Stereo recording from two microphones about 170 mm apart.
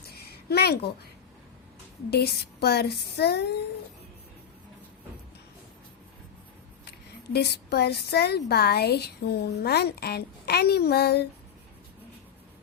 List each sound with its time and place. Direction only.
0.0 s a sound: 65° left (ahead or behind)
2.0 s a woman's voice: 70° left (ahead or behind)
7.3 s a woman's voice: 75° left (ahead or behind)